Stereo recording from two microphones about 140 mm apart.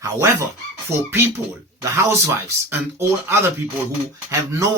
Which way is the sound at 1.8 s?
20° right (ahead or behind).